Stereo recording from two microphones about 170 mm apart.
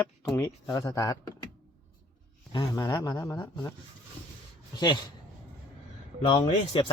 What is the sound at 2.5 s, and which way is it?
Speech, 25° left (ahead or behind).